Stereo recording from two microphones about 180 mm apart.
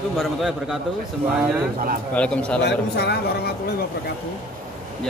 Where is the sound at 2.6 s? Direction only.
70° left (ahead or behind).